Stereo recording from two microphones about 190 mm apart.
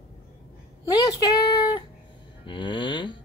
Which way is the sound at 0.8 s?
20° left (ahead or behind).